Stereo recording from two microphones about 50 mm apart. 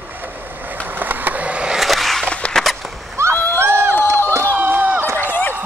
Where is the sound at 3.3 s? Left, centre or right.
Left.